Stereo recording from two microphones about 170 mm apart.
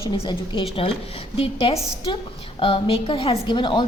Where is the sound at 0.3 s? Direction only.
30° left (ahead or behind).